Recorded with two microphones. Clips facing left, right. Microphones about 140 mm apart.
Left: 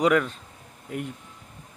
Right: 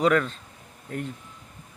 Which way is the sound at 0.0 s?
10° left (ahead or behind).